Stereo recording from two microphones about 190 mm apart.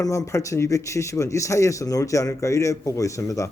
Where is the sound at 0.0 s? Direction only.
15° left (ahead or behind).